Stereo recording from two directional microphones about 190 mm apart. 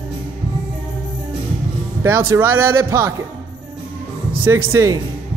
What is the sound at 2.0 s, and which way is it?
Speech, 15° right (ahead or behind).